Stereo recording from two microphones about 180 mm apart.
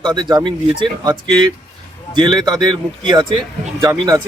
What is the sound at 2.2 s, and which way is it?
Speech, 25° right (ahead or behind).